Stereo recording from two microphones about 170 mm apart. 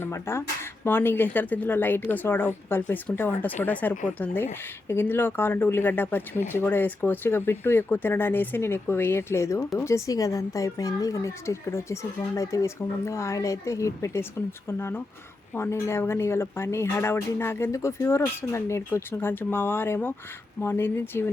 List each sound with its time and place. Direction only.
0.0 s speech: 15° left (ahead or behind)